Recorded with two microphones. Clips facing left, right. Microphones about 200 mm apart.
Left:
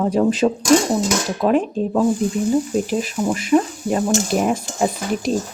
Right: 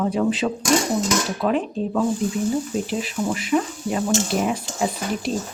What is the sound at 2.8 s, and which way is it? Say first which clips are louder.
Speech: left 4 dB; 45° left (ahead or behind).